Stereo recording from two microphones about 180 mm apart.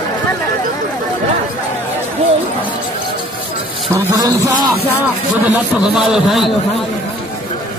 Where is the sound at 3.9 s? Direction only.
20° right (ahead or behind).